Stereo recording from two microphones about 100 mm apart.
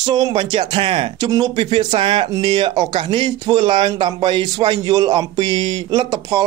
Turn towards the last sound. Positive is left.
turn(degrees=-40)  # may be behind; listen again after turning